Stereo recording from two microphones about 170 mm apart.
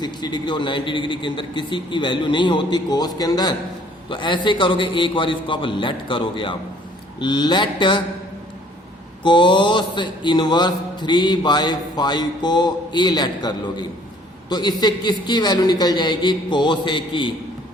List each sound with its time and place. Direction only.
0.0 s speech: 25° left (ahead or behind)
9.2 s speech: 30° left (ahead or behind)